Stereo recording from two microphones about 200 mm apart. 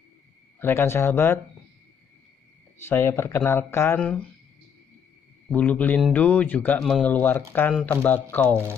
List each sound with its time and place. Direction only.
0.6 s speech: 10° left (ahead or behind)
2.9 s speech: 10° left (ahead or behind)
5.5 s speech: 10° left (ahead or behind)